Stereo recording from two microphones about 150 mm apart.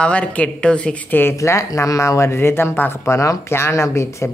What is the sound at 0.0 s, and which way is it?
Speech, 10° left (ahead or behind).